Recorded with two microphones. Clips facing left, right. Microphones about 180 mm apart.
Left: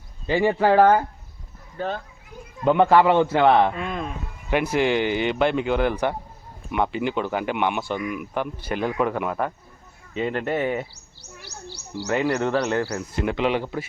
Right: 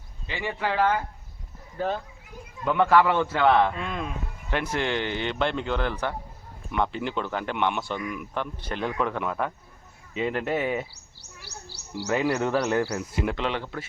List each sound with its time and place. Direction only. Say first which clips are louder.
0.3 s speech: left 11 dB; 40° left (ahead or behind)
1.8 s speech: even; 5° right (ahead or behind)
2.6 s a man's voice: left 4 dB; 25° left (ahead or behind)
3.8 s speech: left 3 dB; centre (ahead or behind)
13.2 s speech: left 8 dB; 10° left (ahead or behind)